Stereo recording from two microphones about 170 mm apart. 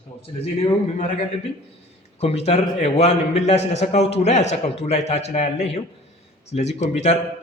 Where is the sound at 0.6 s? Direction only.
50° left (ahead or behind).